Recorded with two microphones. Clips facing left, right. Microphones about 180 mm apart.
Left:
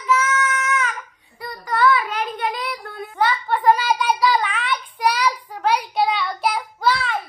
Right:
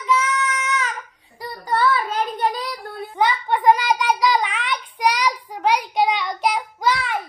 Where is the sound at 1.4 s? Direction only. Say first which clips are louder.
Left 1 dB; 35° right (ahead or behind).